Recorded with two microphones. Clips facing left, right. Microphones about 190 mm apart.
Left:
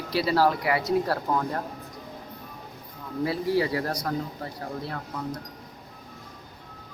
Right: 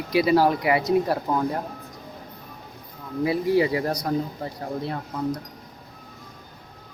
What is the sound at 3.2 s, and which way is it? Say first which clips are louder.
A man's voice: right 4 dB; 15° right (ahead or behind).